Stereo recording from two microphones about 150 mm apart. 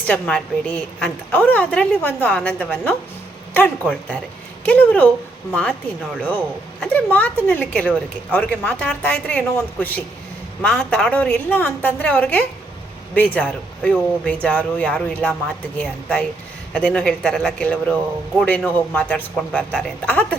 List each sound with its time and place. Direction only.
0.1 s a woman's voice: 5° left (ahead or behind)